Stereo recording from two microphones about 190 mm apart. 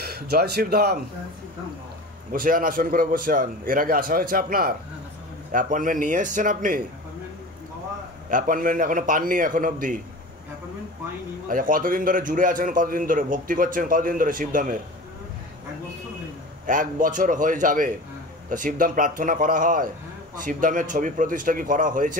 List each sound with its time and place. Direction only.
0.0 s speech: 55° right (ahead or behind)
2.3 s a man's voice: 45° right (ahead or behind)
8.3 s a man's voice: 45° right (ahead or behind)
11.4 s a man's voice: 45° right (ahead or behind)
16.6 s a man's voice: 45° right (ahead or behind)